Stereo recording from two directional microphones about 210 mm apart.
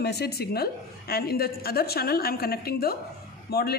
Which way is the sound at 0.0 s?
50° left (ahead or behind).